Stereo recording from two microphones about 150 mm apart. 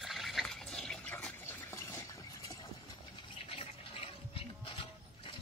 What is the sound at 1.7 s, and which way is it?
Stir, 20° left (ahead or behind).